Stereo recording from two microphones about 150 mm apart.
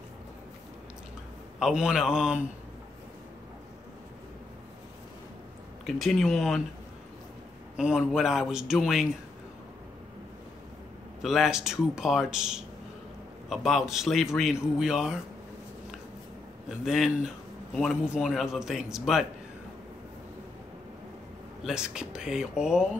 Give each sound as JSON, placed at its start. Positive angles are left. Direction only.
{"t": 1.6, "sound": "a man's voice", "side_deg": -5}
{"t": 5.9, "sound": "a man's voice", "side_deg": 0}
{"t": 7.7, "sound": "a man's voice", "side_deg": -5}
{"t": 11.2, "sound": "a man's voice", "side_deg": 0}
{"t": 16.6, "sound": "a man's voice", "side_deg": 0}
{"t": 21.6, "sound": "a man's voice", "side_deg": -5}